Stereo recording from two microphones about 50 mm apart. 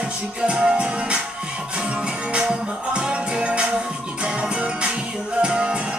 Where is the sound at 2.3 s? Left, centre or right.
Centre.